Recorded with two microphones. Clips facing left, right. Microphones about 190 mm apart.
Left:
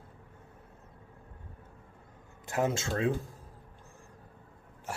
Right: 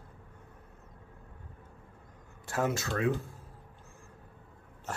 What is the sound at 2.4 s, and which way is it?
Speech, 20° left (ahead or behind).